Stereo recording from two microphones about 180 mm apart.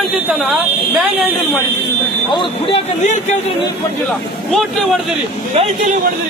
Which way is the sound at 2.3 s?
25° left (ahead or behind).